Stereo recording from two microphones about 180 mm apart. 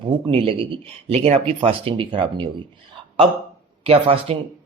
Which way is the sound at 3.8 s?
35° right (ahead or behind).